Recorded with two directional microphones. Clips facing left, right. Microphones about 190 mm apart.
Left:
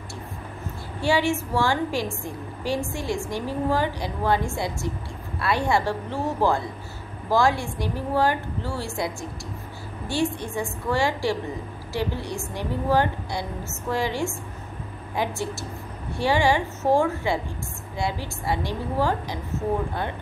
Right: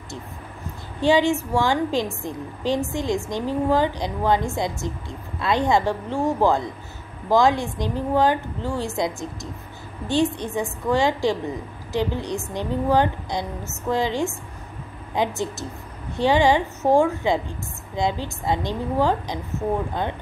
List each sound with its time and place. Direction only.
1.0 s a woman's voice: 20° right (ahead or behind)